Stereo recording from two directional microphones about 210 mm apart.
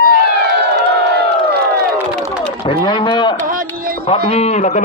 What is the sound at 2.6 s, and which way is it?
Speech, 20° left (ahead or behind).